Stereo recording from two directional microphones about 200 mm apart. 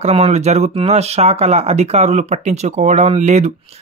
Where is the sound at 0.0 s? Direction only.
30° right (ahead or behind).